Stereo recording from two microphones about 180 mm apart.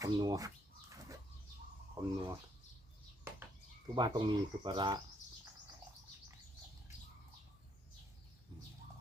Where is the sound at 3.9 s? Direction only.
25° right (ahead or behind).